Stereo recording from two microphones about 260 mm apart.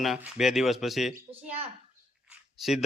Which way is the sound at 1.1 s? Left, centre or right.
Right.